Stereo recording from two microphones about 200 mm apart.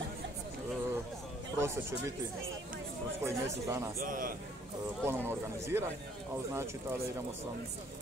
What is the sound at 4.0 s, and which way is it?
Speech, 45° right (ahead or behind).